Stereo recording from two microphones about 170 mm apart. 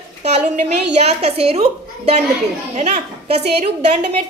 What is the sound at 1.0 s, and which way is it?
Speech, 40° right (ahead or behind).